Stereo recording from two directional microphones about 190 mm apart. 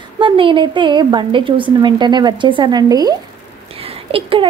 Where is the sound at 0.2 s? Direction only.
25° right (ahead or behind).